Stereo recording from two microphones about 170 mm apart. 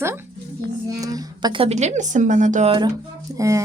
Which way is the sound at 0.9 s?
20° right (ahead or behind).